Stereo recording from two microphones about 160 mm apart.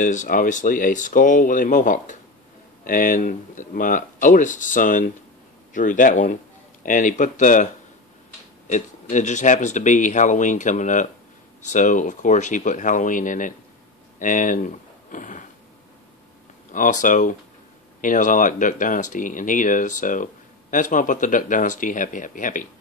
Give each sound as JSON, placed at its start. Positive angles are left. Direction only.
{"t": 0.0, "sound": "speech", "side_deg": 55}
{"t": 16.7, "sound": "speech", "side_deg": 55}